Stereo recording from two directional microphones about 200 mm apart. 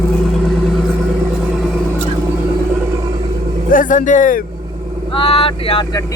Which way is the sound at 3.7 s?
40° left (ahead or behind).